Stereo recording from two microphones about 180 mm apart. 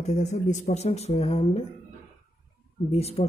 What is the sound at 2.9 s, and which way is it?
Speech, 35° left (ahead or behind).